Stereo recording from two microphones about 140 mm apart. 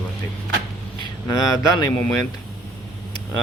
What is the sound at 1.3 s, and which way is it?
Speech, 25° left (ahead or behind).